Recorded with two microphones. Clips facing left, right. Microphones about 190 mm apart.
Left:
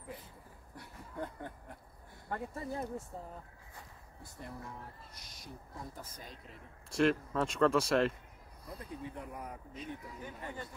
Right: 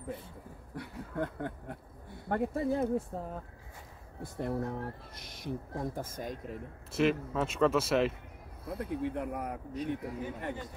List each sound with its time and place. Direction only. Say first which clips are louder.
0.7 s speech: right 7 dB; 75° right (ahead or behind)
4.2 s speech: right 13 dB; 65° right (ahead or behind)
5.4 s speech: right 12 dB; 55° right (ahead or behind)
6.9 s speech: right 1 dB; 5° right (ahead or behind)
8.6 s speech: right 10 dB; 65° right (ahead or behind)